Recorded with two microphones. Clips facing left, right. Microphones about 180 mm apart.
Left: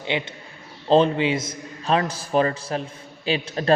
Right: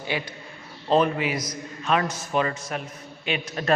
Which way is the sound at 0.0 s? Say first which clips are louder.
Left 3 dB; 20° left (ahead or behind).